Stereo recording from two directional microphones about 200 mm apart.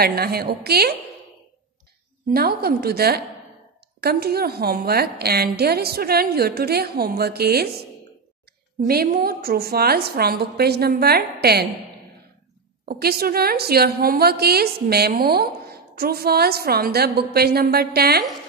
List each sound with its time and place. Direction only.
0.0 s a woman's voice: 50° right (ahead or behind)
2.3 s a woman's voice: 50° right (ahead or behind)
8.8 s a woman's voice: 45° right (ahead or behind)
12.8 s a woman's voice: 50° right (ahead or behind)